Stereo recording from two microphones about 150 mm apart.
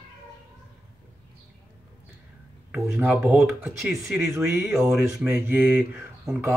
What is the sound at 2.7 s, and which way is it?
Speech, 5° right (ahead or behind).